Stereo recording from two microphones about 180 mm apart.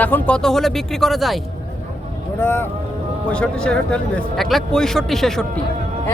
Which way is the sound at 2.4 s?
10° left (ahead or behind).